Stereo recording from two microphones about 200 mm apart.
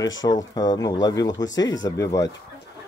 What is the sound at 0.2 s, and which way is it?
Speech, 20° left (ahead or behind).